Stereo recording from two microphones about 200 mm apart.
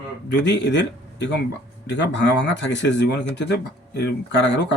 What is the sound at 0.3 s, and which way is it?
Speech, 60° left (ahead or behind).